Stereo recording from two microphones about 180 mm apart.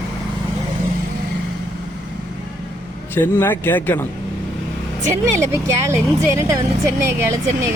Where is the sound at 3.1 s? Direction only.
10° left (ahead or behind).